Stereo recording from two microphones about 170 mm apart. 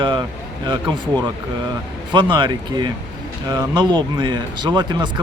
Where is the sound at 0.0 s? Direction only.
25° right (ahead or behind).